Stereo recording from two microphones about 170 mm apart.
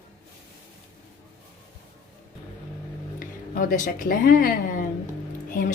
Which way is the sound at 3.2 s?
50° left (ahead or behind).